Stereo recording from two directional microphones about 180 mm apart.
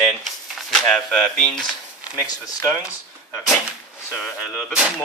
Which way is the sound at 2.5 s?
20° left (ahead or behind).